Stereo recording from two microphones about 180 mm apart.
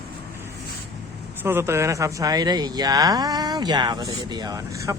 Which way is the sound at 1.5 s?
15° right (ahead or behind).